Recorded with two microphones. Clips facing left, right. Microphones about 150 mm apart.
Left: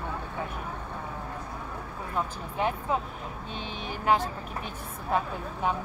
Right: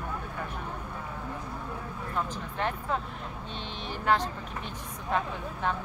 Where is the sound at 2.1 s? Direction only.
10° left (ahead or behind).